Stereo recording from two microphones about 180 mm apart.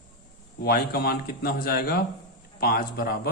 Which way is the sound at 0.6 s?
60° left (ahead or behind).